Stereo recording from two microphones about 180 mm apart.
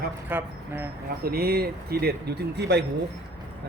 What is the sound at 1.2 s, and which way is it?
Speech, 60° right (ahead or behind).